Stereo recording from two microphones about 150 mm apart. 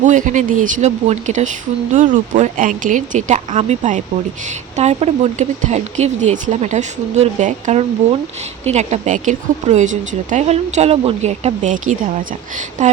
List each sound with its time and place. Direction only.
0.0 s a woman's voice: 55° right (ahead or behind)